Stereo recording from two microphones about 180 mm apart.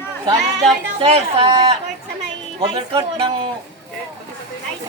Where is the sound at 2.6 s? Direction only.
25° right (ahead or behind).